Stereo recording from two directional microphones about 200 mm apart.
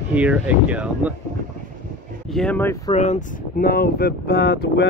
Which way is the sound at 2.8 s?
35° left (ahead or behind).